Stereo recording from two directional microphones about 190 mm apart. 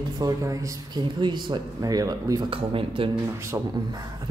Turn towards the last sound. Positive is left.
turn(degrees=-15)  # may be behind; listen again after turning